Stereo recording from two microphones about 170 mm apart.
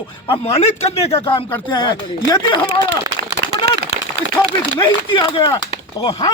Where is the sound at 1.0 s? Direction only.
35° left (ahead or behind).